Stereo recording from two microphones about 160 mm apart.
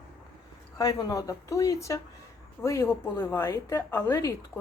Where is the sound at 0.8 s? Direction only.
20° left (ahead or behind).